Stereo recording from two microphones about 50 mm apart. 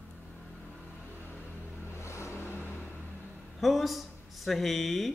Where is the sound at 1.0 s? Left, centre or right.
Left.